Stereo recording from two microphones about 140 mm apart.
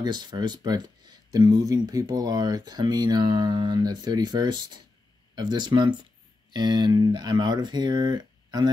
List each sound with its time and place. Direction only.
0.0 s speech: 30° right (ahead or behind)